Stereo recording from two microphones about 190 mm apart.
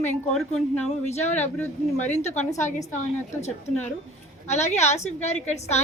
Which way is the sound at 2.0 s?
40° left (ahead or behind).